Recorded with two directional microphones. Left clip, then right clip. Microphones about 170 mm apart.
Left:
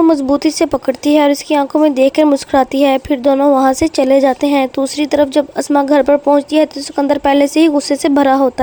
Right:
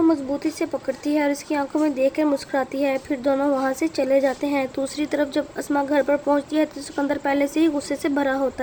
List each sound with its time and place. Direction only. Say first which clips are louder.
0.1 s speech: left 10 dB; 45° left (ahead or behind)